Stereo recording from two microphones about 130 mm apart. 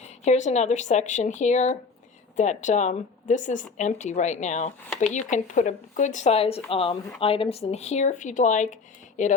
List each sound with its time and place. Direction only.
0.3 s speech: 60° left (ahead or behind)